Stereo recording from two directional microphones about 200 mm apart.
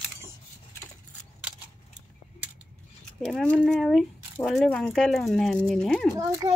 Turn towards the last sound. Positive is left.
turn(degrees=-15)  # may be behind; listen again after turning